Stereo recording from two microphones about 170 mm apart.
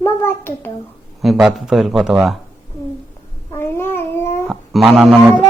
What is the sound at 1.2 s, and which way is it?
A man's voice, centre (ahead or behind).